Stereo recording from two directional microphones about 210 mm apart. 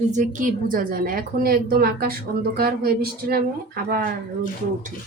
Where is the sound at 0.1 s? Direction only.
40° right (ahead or behind).